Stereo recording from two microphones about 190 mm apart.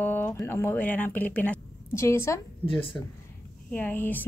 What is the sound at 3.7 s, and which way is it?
Speech, 10° left (ahead or behind).